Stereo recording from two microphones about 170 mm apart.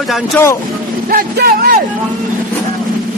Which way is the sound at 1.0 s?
60° right (ahead or behind).